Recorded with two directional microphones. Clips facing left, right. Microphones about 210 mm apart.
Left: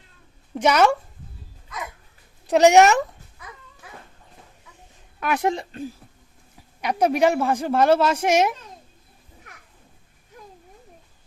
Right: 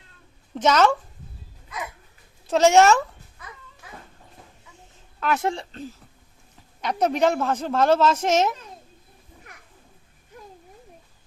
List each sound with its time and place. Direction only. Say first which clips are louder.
0.5 s speech: left 1 dB; 10° left (ahead or behind)
2.5 s speech: left 2 dB; 15° left (ahead or behind)
5.2 s speech: left 1 dB; 15° left (ahead or behind)